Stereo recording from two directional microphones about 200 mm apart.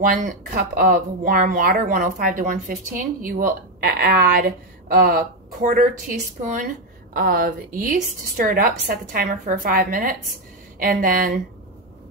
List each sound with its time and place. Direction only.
0.0 s speech: 40° right (ahead or behind)